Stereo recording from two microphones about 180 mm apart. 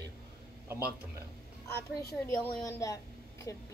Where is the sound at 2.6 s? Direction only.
15° left (ahead or behind).